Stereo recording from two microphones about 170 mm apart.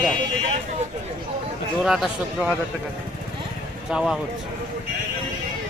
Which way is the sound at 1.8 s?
5° right (ahead or behind).